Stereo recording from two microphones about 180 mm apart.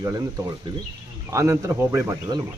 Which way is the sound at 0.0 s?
20° right (ahead or behind).